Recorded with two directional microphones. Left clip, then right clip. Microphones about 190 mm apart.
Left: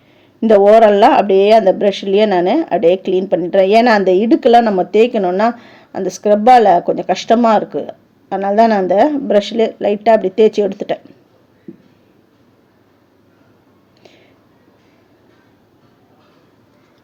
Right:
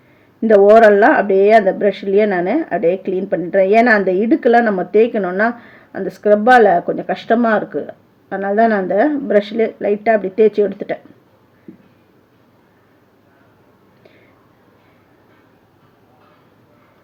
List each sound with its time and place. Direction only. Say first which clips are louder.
0.4 s a woman's voice: even; 25° left (ahead or behind)